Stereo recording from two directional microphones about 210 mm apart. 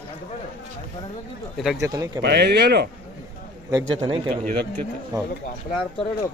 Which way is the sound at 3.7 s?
20° right (ahead or behind).